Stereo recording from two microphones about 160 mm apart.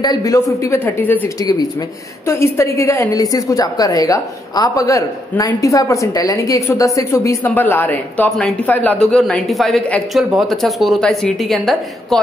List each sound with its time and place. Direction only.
0.0 s a woman's voice: 25° left (ahead or behind)
1.4 s a woman's voice: 25° left (ahead or behind); by 12.2 s centre (ahead or behind)